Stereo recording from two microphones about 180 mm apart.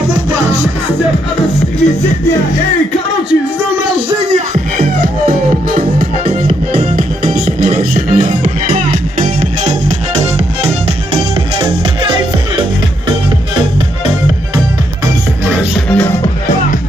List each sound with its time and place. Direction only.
5.8 s music: 35° right (ahead or behind)
7.0 s music: 50° right (ahead or behind)